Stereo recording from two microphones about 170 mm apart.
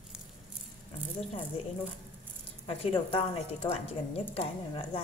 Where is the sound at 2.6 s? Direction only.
30° left (ahead or behind).